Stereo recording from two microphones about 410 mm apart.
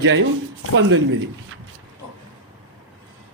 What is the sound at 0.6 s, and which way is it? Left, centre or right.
Speech, right.